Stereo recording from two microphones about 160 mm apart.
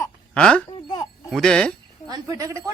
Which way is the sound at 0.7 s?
30° left (ahead or behind).